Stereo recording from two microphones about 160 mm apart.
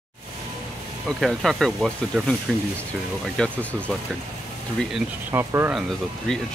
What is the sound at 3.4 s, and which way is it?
Speech, 5° left (ahead or behind).